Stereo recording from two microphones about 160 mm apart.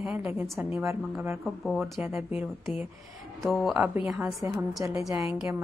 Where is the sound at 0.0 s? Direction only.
10° right (ahead or behind).